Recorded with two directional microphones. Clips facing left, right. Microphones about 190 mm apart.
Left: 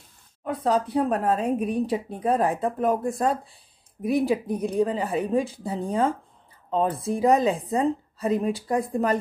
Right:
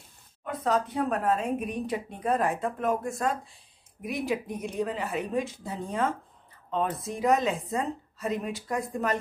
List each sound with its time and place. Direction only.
0.5 s speech: 35° left (ahead or behind)